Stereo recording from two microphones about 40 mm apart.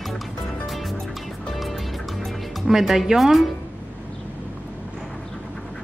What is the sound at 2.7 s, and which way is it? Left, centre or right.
Speech, centre.